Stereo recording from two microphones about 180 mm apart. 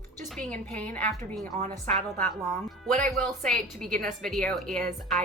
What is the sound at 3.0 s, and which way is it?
A woman's voice, 5° left (ahead or behind).